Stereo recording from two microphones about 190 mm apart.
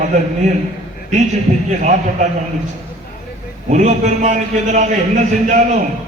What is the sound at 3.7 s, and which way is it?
A man's voice, 40° right (ahead or behind).